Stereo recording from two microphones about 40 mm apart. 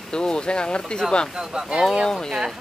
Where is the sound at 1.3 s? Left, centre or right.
Centre.